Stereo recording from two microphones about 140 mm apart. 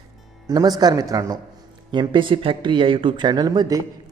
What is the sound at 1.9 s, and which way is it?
Speech, 35° right (ahead or behind).